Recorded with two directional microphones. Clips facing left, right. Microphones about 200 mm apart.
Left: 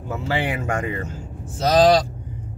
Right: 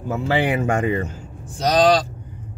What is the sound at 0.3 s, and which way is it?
Speech, 20° right (ahead or behind).